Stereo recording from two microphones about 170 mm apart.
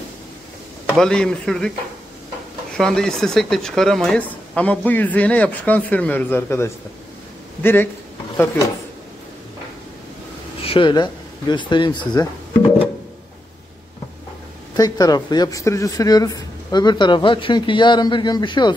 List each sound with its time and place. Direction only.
0.8 s a man's voice: 5° left (ahead or behind)
2.8 s speech: 5° left (ahead or behind)
10.6 s speech: 30° left (ahead or behind)
14.8 s speech: 20° left (ahead or behind)